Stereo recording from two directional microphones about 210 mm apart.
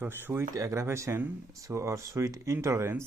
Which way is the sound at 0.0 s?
10° right (ahead or behind).